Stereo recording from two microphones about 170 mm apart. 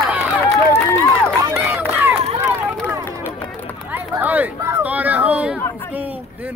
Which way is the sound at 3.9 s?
10° right (ahead or behind).